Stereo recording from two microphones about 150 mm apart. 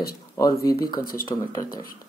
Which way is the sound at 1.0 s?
75° left (ahead or behind).